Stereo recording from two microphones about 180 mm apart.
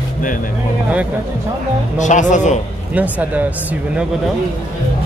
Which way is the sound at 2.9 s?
10° right (ahead or behind).